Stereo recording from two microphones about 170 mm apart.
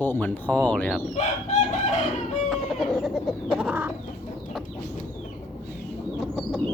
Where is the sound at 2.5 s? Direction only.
Centre (ahead or behind).